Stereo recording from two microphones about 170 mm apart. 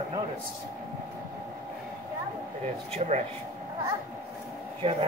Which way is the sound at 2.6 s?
45° right (ahead or behind).